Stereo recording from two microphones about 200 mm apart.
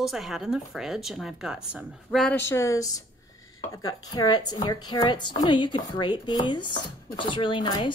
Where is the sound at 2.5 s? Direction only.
15° left (ahead or behind).